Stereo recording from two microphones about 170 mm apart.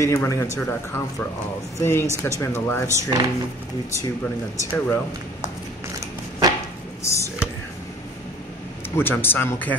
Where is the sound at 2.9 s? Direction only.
20° right (ahead or behind).